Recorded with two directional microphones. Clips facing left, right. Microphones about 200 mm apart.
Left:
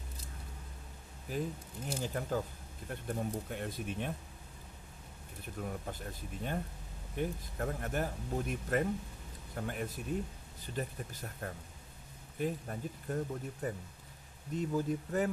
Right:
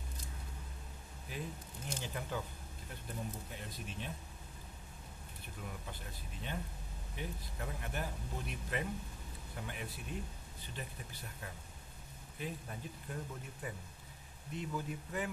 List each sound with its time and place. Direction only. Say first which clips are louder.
2.0 s speech: left 7 dB; 40° left (ahead or behind)
2.9 s speech: left 8 dB; 60° left (ahead or behind)
5.6 s speech: left 7 dB; 45° left (ahead or behind)